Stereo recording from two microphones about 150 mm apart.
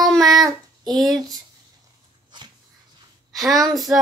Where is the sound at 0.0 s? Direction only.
Centre (ahead or behind).